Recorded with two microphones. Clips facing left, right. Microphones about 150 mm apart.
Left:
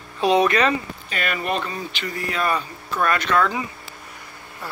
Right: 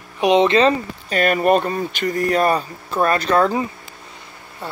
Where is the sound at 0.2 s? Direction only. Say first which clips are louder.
Right 4 dB; 20° right (ahead or behind).